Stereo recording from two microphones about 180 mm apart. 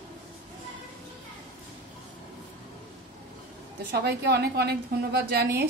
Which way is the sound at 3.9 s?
65° right (ahead or behind).